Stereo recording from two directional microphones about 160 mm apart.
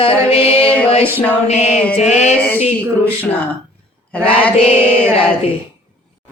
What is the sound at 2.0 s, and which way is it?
Speech, 45° left (ahead or behind).